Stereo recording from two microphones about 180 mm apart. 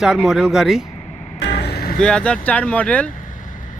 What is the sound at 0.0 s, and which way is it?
Speech, centre (ahead or behind).